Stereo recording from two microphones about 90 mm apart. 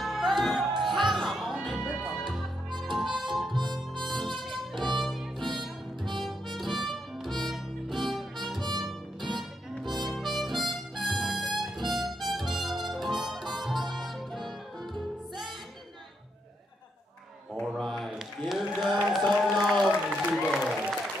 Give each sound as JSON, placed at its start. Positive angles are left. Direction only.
{"t": 0.0, "sound": "music", "side_deg": 0}
{"t": 2.9, "sound": "harmonica", "side_deg": 0}
{"t": 4.1, "sound": "music", "side_deg": 0}
{"t": 9.9, "sound": "music", "side_deg": 0}
{"t": 11.9, "sound": "harmonica", "side_deg": 0}
{"t": 17.6, "sound": "a sound", "side_deg": 0}